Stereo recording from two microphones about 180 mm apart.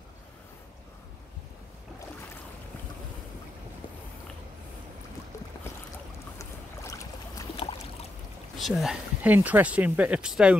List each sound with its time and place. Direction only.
6.3 s boat: 15° left (ahead or behind)
8.5 s speech: centre (ahead or behind)